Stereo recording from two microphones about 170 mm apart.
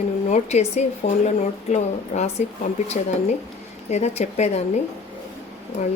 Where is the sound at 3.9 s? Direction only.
40° left (ahead or behind).